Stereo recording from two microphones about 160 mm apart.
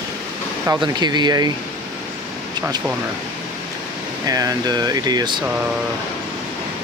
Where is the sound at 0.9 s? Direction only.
25° right (ahead or behind).